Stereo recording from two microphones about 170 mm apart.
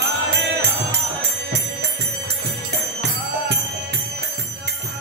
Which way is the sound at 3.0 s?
85° right.